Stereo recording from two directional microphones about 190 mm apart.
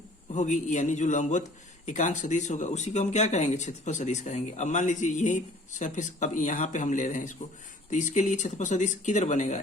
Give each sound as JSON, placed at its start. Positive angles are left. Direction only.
{"t": 0.3, "sound": "speech", "side_deg": 40}